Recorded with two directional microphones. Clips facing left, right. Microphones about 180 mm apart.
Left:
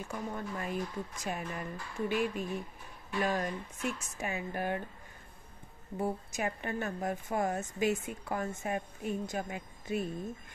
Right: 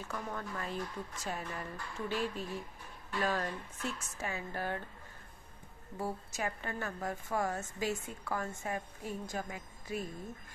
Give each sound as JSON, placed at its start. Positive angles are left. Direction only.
{"t": 0.0, "sound": "speech", "side_deg": 15}
{"t": 5.9, "sound": "a woman's voice", "side_deg": 20}